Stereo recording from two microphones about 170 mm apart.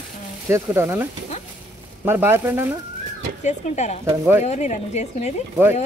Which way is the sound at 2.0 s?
15° right (ahead or behind).